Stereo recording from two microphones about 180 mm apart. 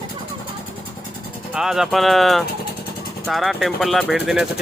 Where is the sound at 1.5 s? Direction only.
5° right (ahead or behind).